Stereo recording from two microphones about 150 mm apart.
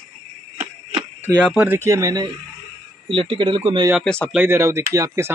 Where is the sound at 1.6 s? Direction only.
15° right (ahead or behind).